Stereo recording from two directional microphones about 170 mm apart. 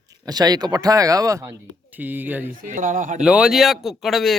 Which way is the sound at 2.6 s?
50° right (ahead or behind).